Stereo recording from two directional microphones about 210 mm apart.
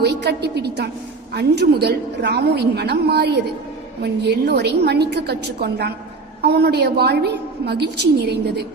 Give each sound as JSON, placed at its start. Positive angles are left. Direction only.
{"t": 0.0, "sound": "a woman's voice", "side_deg": -50}